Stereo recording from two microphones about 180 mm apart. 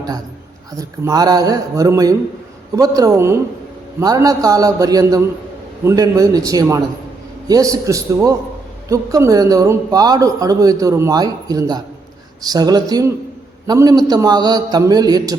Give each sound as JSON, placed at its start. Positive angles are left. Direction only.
{"t": 0.8, "sound": "a man's voice", "side_deg": -20}